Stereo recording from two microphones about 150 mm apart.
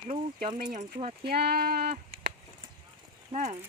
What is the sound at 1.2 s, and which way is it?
Speech, 90° right.